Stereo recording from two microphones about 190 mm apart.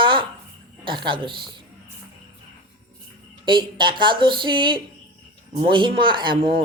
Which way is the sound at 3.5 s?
25° right (ahead or behind).